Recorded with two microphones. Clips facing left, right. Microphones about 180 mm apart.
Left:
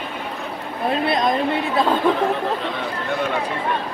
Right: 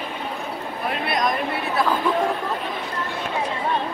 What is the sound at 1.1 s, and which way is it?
Speech, 25° left (ahead or behind).